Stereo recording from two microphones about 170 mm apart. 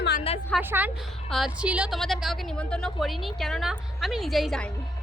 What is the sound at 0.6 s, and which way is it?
A woman's voice, 10° right (ahead or behind).